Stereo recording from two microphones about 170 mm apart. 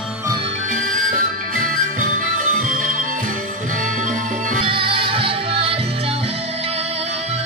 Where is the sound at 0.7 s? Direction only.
50° right (ahead or behind).